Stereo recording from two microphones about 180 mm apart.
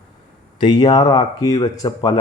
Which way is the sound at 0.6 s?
25° left (ahead or behind).